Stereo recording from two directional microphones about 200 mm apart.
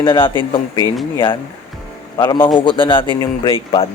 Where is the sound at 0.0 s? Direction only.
25° left (ahead or behind).